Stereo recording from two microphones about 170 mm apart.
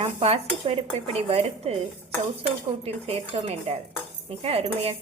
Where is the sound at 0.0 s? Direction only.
40° right (ahead or behind).